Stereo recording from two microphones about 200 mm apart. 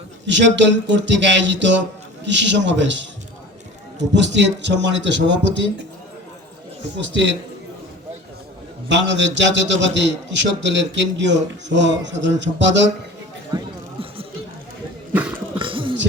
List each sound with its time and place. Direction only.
0.3 s a man's voice: 65° right (ahead or behind)
6.9 s a man's voice: 65° right (ahead or behind)
8.9 s a man's voice: 65° right (ahead or behind)
13.5 s speech: 20° right (ahead or behind)
15.1 s a sound: 10° right (ahead or behind)
15.5 s beatboxing: 25° right (ahead or behind)